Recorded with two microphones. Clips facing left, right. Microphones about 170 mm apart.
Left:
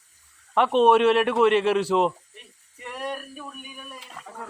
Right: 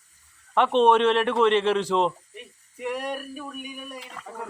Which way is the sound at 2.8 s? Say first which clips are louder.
Right 3 dB; 10° right (ahead or behind).